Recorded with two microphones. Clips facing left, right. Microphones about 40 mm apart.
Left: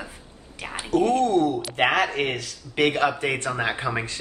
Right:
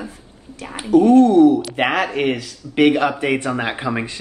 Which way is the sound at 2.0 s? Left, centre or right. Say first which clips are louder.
Right 4 dB; centre.